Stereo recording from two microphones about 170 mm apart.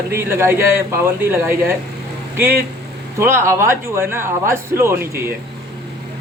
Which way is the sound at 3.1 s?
15° right (ahead or behind).